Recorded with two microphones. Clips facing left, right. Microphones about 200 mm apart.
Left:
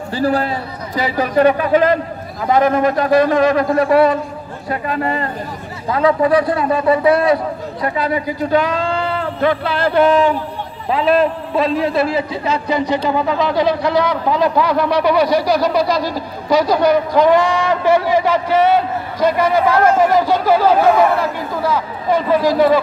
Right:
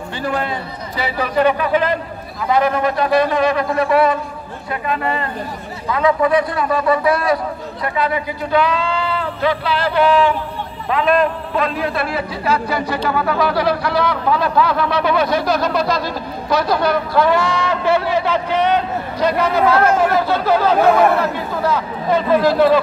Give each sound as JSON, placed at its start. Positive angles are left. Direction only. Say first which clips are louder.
{"t": 0.1, "sound": "a man's voice", "louder": "left 5 dB", "side_deg": 35}
{"t": 10.9, "sound": "a man's voice", "louder": "left 2 dB", "side_deg": 30}